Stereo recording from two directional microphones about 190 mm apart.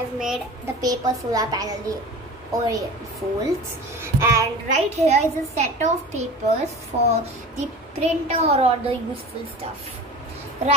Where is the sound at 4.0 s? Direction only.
15° right (ahead or behind).